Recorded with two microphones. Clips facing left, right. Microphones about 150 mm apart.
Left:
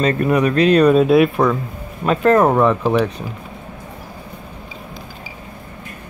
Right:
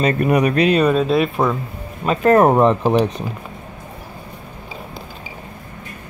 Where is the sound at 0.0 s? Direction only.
10° right (ahead or behind).